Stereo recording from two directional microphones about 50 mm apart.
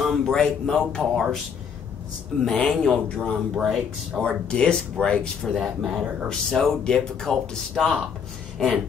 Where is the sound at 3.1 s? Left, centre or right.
Centre.